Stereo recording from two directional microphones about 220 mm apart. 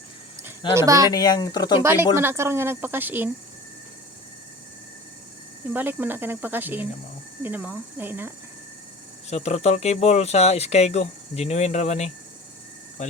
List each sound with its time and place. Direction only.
0.7 s speech: 15° right (ahead or behind)
1.1 s speech: 15° left (ahead or behind)
1.8 s speech: 10° right (ahead or behind)
5.7 s speech: 10° right (ahead or behind)
9.3 s speech: 30° left (ahead or behind)